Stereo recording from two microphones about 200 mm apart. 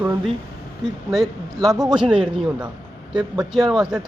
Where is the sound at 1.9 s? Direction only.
5° right (ahead or behind).